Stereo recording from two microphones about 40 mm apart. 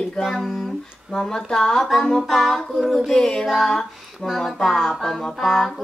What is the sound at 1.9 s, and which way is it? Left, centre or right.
Speech, centre.